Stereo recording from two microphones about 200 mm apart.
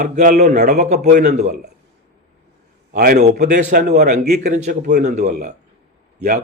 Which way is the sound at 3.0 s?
45° right (ahead or behind).